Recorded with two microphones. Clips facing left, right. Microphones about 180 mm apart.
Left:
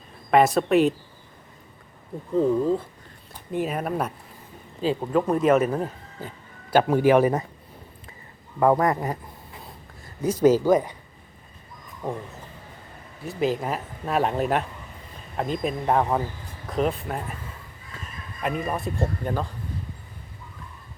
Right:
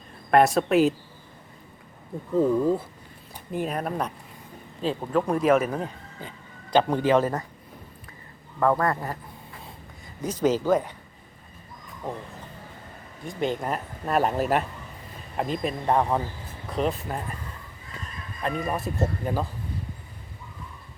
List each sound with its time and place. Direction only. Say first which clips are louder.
0.3 s speech: left 1 dB; centre (ahead or behind)
2.4 s speech: even; 10° right (ahead or behind); by 7.4 s 15° left (ahead or behind)
8.5 s speech: left 3 dB; 20° left (ahead or behind)
10.2 s speech: left 5 dB; 10° left (ahead or behind)
13.2 s speech: left 2 dB; 5° left (ahead or behind)
18.4 s speech: left 1 dB; centre (ahead or behind)